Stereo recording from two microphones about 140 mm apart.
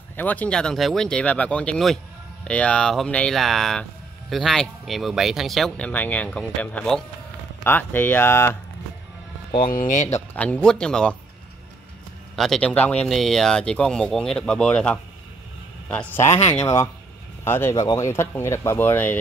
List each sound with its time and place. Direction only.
0.1 s speech: 10° left (ahead or behind)
9.6 s speech: 80° left
10.0 s speech: 15° left (ahead or behind)
12.4 s speech: 5° left (ahead or behind)